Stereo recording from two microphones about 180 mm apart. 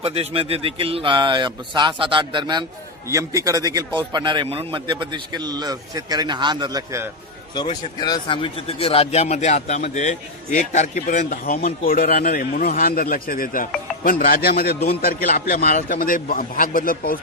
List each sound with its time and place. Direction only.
0.0 s a man's voice: 35° right (ahead or behind)
8.0 s a man's voice: 25° left (ahead or behind); by 17.2 s 55° left (ahead or behind)